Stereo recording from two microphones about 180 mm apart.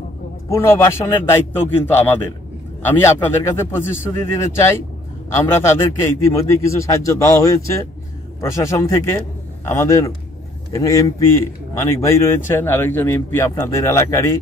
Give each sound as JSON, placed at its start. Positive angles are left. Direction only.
{"t": 0.5, "sound": "a man's voice", "side_deg": 15}